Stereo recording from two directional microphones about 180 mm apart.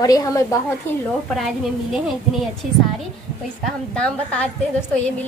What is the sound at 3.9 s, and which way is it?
A woman's voice, 5° left (ahead or behind).